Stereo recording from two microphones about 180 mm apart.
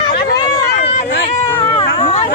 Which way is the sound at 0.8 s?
35° left (ahead or behind).